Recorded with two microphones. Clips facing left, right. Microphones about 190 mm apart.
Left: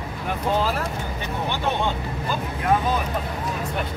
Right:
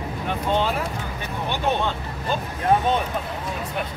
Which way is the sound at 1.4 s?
15° right (ahead or behind).